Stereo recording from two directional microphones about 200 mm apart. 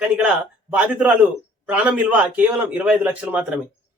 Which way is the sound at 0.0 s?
5° right (ahead or behind).